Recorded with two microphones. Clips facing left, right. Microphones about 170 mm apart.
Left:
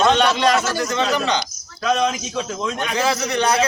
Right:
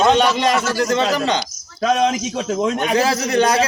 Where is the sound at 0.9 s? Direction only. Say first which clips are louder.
Right 3 dB; 35° right (ahead or behind).